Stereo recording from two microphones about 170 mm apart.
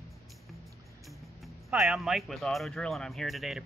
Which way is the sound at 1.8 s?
Centre (ahead or behind).